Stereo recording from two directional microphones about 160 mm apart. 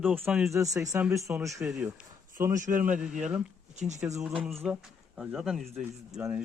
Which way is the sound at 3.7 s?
45° right (ahead or behind).